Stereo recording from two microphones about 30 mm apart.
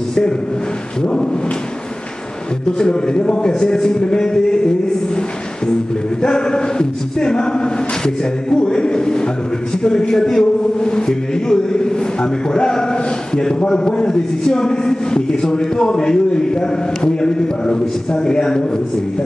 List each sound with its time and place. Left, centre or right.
2.8 s a man's voice: left
6.2 s a man's voice: left